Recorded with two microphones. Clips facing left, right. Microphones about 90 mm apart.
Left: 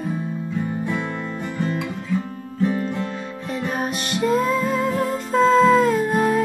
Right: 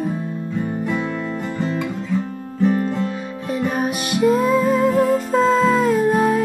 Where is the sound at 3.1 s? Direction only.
5° right (ahead or behind).